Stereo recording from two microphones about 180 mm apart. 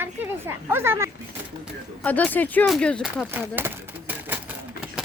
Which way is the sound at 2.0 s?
10° left (ahead or behind).